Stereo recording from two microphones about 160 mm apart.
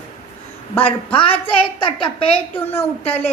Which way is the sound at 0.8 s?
35° left (ahead or behind).